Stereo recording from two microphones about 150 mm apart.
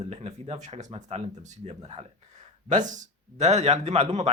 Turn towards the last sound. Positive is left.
turn(degrees=-45)  # may be behind; listen again after turning